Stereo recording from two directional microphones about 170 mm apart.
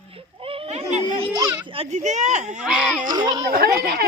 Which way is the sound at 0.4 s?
35° right (ahead or behind).